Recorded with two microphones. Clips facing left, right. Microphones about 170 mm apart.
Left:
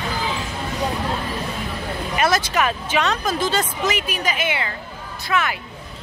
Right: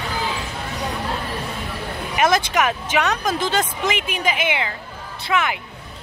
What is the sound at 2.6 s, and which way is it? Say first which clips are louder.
Speech: even; 15° right (ahead or behind).